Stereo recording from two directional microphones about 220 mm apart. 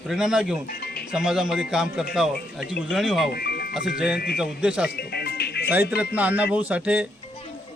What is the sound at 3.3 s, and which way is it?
Music, 45° left (ahead or behind).